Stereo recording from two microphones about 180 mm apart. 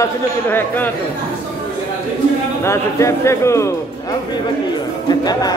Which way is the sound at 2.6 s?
15° left (ahead or behind).